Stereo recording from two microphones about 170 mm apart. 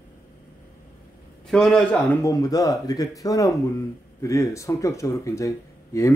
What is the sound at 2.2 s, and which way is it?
Speech, 20° left (ahead or behind).